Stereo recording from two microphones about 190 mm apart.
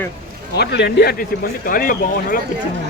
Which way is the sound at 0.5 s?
65° left (ahead or behind).